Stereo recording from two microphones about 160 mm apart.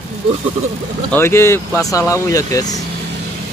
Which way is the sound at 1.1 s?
15° left (ahead or behind).